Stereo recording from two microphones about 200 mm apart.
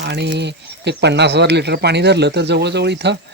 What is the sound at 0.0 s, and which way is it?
Speech, 55° right (ahead or behind).